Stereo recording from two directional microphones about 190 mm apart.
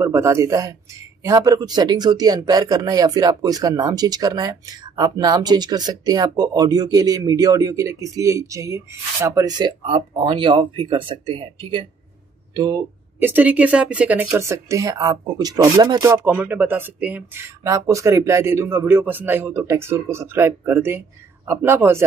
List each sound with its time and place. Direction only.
0.0 s speech: 15° right (ahead or behind)